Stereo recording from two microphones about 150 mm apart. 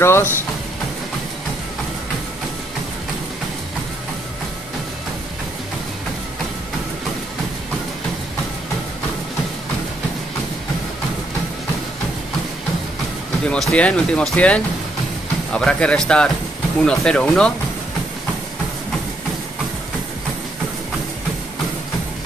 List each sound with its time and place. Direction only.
0.0 s speech: 15° left (ahead or behind)
13.5 s speech: 5° left (ahead or behind)